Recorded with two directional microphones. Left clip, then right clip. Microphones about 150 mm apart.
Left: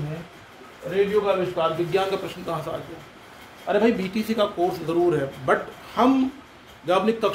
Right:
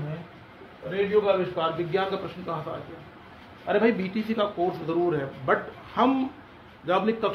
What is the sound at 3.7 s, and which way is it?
A man's voice, 10° left (ahead or behind).